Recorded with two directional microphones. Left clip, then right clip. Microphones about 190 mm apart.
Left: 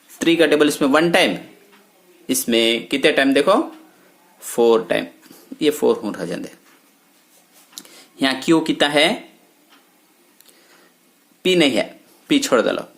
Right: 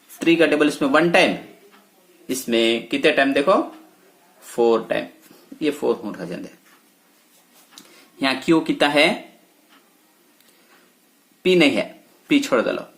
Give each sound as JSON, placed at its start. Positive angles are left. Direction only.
{"t": 0.2, "sound": "speech", "side_deg": 30}
{"t": 7.8, "sound": "speech", "side_deg": 30}
{"t": 11.4, "sound": "speech", "side_deg": 25}